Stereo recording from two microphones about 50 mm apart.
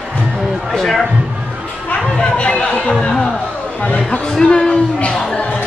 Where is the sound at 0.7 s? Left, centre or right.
Centre.